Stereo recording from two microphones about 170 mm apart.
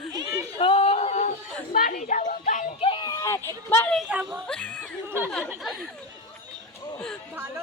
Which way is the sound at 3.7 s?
15° left (ahead or behind).